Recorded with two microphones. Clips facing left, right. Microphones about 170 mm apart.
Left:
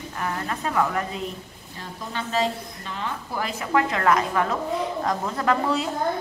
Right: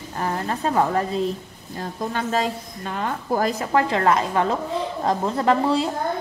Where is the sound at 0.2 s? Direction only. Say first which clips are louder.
Right 4 dB; 35° right (ahead or behind).